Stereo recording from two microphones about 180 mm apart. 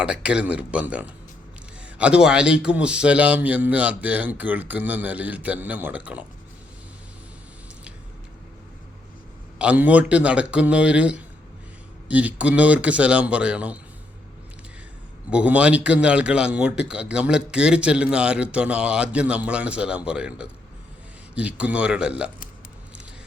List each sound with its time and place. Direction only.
0.0 s a man's voice: 5° right (ahead or behind)
9.6 s a man's voice: 10° right (ahead or behind)
15.3 s a man's voice: 5° right (ahead or behind)